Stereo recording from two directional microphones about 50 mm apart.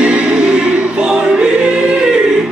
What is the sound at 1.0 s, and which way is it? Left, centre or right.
Choir, centre.